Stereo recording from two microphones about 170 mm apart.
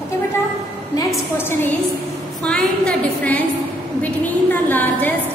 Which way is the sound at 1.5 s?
15° left (ahead or behind).